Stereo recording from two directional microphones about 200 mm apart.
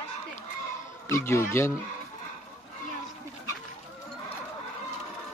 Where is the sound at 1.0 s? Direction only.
15° left (ahead or behind).